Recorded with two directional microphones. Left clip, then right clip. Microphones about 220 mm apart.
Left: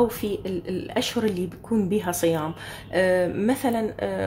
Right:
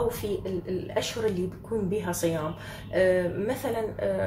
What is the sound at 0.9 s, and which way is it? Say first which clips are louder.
Speech: left 3 dB; 45° left (ahead or behind).